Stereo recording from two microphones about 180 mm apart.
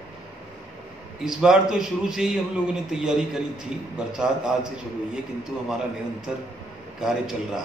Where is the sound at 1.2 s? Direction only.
5° right (ahead or behind).